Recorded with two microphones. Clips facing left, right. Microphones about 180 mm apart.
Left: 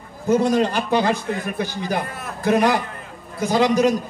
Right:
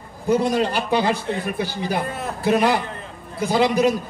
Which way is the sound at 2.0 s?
25° right (ahead or behind).